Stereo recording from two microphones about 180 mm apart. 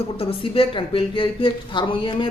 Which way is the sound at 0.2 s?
30° left (ahead or behind).